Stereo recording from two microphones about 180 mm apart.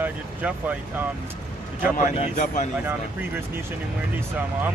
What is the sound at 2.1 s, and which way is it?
Speech, 40° left (ahead or behind).